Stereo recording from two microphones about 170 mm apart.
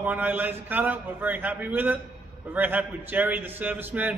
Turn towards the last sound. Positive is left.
turn(degrees=-10)  # may be behind; listen again after turning